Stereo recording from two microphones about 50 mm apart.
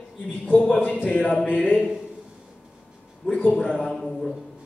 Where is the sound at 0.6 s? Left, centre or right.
Left.